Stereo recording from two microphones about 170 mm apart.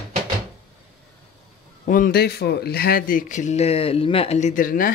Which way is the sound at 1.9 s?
60° left (ahead or behind).